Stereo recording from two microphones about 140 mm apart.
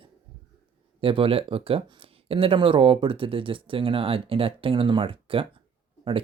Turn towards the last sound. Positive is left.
turn(degrees=-40)  # may be behind; listen again after turning